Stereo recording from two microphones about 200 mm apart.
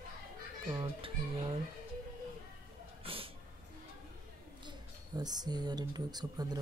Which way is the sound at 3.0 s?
25° right (ahead or behind).